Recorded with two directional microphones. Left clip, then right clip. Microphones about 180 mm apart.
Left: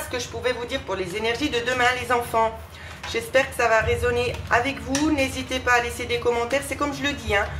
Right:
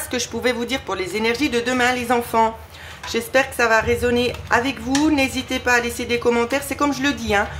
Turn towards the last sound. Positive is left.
turn(degrees=-30)  # may be behind; listen again after turning